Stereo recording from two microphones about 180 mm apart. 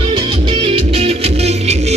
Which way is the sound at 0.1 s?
30° right (ahead or behind).